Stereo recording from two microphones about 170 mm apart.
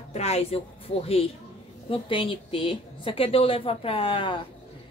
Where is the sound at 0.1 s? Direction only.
40° left (ahead or behind).